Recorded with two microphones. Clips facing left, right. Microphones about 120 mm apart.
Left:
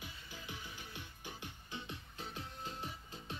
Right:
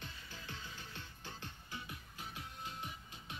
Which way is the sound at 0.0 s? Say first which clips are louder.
Left 1 dB; 15° left (ahead or behind).